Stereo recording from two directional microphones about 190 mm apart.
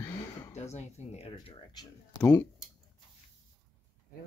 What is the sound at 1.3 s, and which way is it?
Speech, 20° left (ahead or behind).